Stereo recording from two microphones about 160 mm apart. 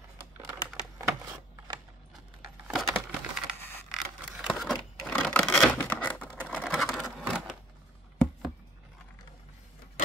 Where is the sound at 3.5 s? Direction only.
15° left (ahead or behind).